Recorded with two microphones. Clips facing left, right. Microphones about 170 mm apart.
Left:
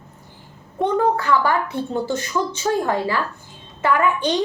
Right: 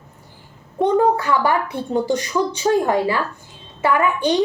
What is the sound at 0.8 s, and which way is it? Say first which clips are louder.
A woman's voice: right 3 dB; 15° right (ahead or behind).